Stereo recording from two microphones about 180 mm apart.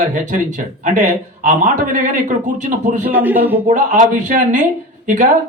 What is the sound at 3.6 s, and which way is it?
Speech, 45° right (ahead or behind).